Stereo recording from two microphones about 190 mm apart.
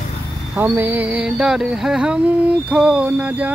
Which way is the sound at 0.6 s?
10° right (ahead or behind).